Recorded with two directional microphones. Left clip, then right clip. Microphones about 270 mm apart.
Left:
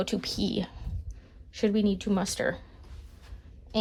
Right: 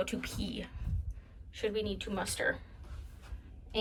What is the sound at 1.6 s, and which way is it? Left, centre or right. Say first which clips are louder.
Speech: left 7 dB; left.